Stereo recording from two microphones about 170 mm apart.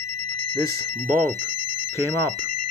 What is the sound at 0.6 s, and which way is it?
Speech, 65° right (ahead or behind).